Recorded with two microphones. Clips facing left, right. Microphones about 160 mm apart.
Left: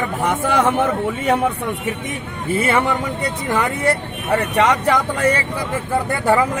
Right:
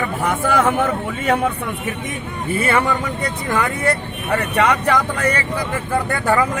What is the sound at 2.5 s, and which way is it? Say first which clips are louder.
A man's voice: left 1 dB; 20° left (ahead or behind).